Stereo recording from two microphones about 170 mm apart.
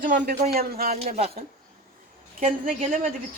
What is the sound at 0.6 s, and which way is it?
Speech, 65° right (ahead or behind).